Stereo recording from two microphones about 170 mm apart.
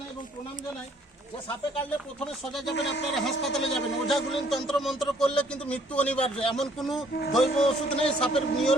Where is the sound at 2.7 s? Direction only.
90° left.